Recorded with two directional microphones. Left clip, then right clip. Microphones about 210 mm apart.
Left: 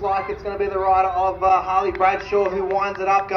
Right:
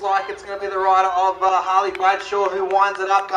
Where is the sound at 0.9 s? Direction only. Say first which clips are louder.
Right 2 dB; 30° right (ahead or behind).